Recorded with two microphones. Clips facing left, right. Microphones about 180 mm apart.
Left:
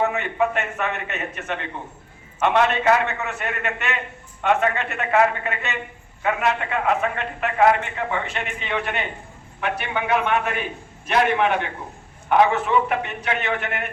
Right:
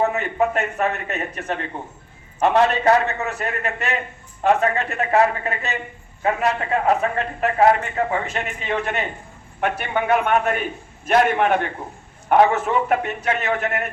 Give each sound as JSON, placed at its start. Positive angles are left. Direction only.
{"t": 0.0, "sound": "a man's voice", "side_deg": -40}